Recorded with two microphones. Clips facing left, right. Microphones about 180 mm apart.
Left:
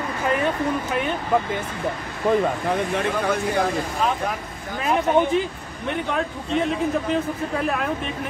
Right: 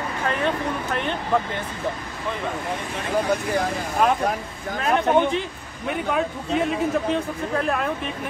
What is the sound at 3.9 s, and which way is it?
Speech, 50° right (ahead or behind).